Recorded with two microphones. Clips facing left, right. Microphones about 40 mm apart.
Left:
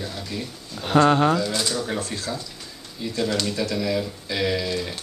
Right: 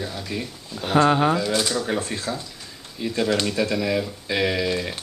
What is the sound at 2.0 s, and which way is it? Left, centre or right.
Speech, right.